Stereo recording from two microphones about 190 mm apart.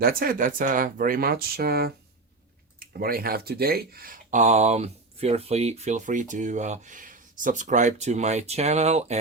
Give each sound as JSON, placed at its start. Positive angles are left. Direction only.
{"t": 0.0, "sound": "speech", "side_deg": -50}